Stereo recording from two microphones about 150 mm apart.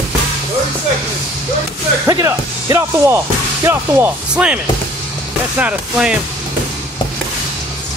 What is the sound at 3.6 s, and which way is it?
Speech, 10° right (ahead or behind).